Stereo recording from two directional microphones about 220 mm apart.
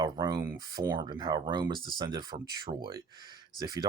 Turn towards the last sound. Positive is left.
turn(degrees=-20)  # may be behind; listen again after turning